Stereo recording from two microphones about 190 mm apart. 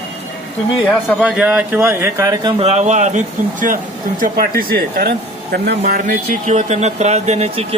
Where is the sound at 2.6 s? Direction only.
35° right (ahead or behind).